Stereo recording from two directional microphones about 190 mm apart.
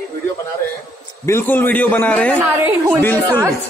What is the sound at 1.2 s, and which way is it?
A man's voice, 10° left (ahead or behind).